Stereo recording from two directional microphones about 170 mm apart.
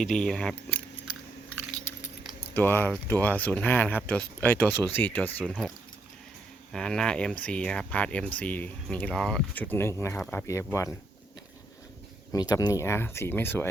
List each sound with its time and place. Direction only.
0.0 s speech: 5° left (ahead or behind)
2.6 s speech: 10° left (ahead or behind)
6.7 s speech: 5° left (ahead or behind)
10.2 s speech: 5° left (ahead or behind)
10.4 s speech: 15° left (ahead or behind)
12.3 s speech: 20° left (ahead or behind)